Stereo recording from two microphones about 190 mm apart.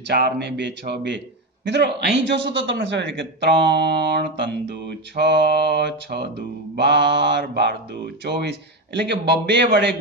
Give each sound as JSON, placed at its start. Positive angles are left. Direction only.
{"t": 0.1, "sound": "a man's voice", "side_deg": -60}